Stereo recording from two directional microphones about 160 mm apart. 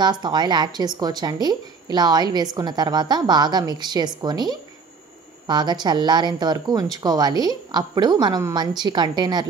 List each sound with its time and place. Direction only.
0.0 s a woman's voice: 25° right (ahead or behind)